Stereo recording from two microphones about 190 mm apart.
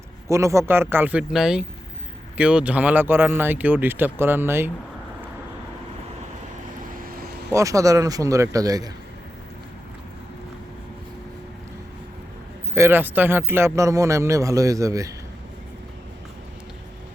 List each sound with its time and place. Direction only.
0.3 s a man's voice: 15° right (ahead or behind)
7.0 s vehicle: 50° right (ahead or behind)
7.5 s a man's voice: 15° right (ahead or behind)
12.7 s a man's voice: 10° right (ahead or behind)